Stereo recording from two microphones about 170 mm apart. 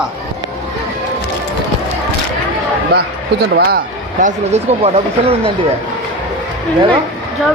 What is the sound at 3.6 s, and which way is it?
Speech, 55° right (ahead or behind).